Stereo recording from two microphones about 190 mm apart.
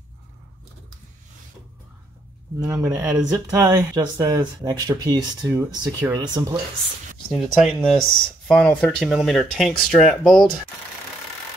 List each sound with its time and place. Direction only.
2.6 s speech: 15° right (ahead or behind)
3.0 s speech: 5° right (ahead or behind)
3.3 s speech: 20° right (ahead or behind)
7.2 s speech: centre (ahead or behind)